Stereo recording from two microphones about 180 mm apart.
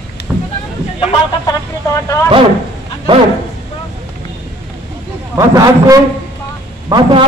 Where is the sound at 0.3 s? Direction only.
5° right (ahead or behind).